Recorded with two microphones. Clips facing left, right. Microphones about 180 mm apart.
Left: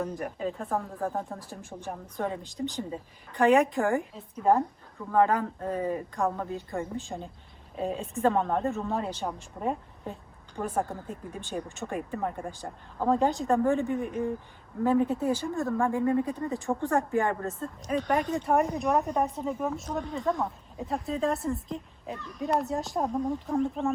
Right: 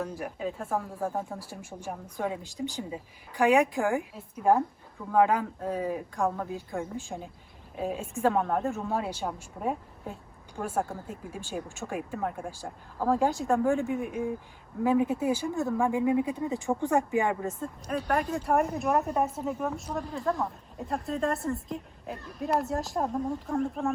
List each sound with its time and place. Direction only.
0.0 s speech: 5° right (ahead or behind)